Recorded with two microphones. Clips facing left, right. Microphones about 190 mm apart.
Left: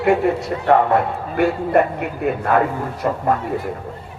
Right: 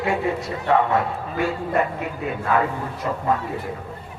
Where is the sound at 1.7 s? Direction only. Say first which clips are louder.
Left 7 dB; 60° left (ahead or behind).